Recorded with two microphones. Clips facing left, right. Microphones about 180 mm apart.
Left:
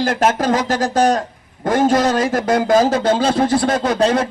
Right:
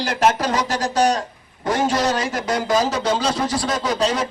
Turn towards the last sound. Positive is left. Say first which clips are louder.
# left 5 dB
turn(degrees=55)  # may be behind; listen again after turning